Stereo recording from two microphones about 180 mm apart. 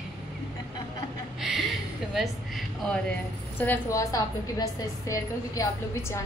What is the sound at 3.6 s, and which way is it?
A woman's voice, 15° left (ahead or behind).